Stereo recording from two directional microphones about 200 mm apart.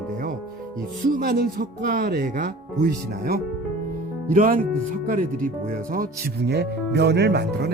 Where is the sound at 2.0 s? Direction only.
55° right (ahead or behind).